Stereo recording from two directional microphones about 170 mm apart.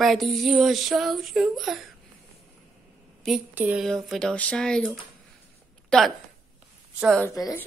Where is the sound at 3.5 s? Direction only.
10° right (ahead or behind).